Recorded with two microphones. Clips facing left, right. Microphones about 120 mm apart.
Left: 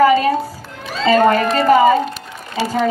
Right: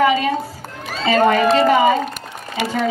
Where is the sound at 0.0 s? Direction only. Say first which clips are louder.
Left 4 dB; 40° left (ahead or behind).